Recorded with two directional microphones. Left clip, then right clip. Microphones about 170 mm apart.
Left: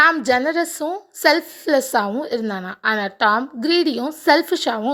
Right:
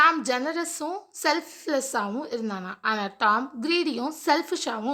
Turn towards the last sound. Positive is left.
turn(degrees=30)  # may be behind; listen again after turning